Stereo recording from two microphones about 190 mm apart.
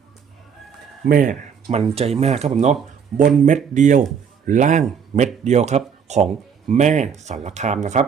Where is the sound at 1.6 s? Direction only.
30° right (ahead or behind).